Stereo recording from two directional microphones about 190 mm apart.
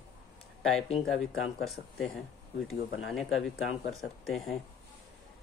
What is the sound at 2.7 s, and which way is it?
Speech, centre (ahead or behind).